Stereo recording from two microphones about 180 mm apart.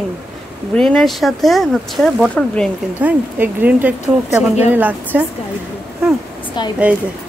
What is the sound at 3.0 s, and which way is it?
Speech, 10° right (ahead or behind).